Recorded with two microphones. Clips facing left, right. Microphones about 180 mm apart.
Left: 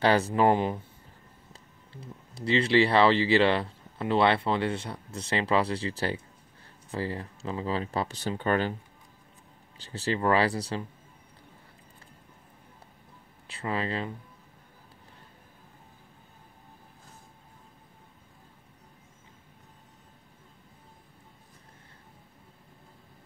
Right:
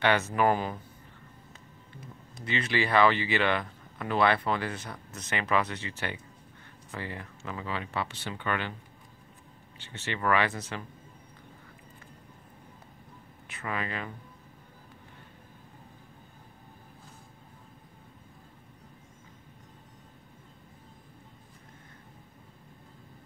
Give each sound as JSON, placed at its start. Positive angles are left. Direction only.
{"t": 0.0, "sound": "speech", "side_deg": 35}
{"t": 9.8, "sound": "speech", "side_deg": 35}
{"t": 13.5, "sound": "speech", "side_deg": 30}